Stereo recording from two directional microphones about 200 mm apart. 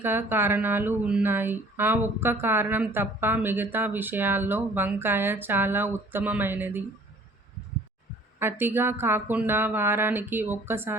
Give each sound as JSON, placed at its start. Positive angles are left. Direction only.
{"t": 0.0, "sound": "speech", "side_deg": -10}
{"t": 8.4, "sound": "speech", "side_deg": -10}